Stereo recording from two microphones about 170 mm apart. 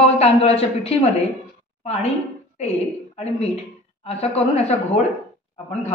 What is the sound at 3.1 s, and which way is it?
A woman's voice, 35° left (ahead or behind).